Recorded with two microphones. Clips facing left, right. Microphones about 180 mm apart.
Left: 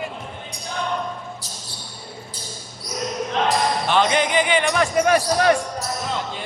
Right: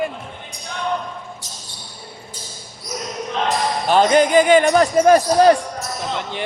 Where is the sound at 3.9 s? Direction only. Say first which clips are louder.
Right 7 dB; 40° right (ahead or behind).